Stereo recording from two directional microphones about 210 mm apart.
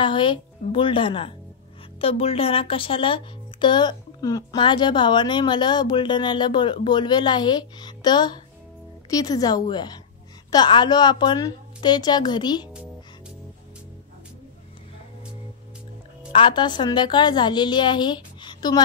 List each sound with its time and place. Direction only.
0.0 s a woman's voice: 25° left (ahead or behind)
16.3 s speech: 25° left (ahead or behind)